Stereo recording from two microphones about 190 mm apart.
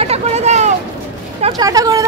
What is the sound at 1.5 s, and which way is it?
Speech, 20° right (ahead or behind).